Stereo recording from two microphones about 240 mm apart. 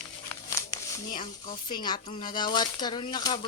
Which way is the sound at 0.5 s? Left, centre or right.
Centre.